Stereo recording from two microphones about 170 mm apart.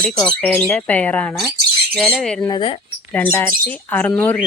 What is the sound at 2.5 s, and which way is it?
Speech, 25° left (ahead or behind).